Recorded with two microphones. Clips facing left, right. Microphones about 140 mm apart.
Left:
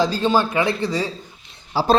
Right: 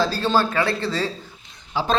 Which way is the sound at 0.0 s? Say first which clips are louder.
Left 2 dB; 15° left (ahead or behind).